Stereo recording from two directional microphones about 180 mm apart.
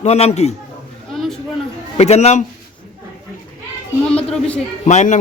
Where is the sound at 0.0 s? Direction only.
35° left (ahead or behind).